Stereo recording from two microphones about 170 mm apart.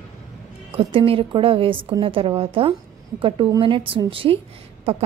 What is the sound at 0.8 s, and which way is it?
A woman's voice, 35° right (ahead or behind).